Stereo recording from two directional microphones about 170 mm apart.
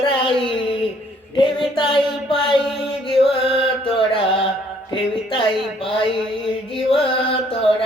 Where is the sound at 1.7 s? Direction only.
30° left (ahead or behind).